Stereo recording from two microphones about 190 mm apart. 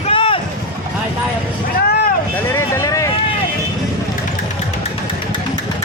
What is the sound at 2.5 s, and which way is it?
Vehicle, 15° left (ahead or behind).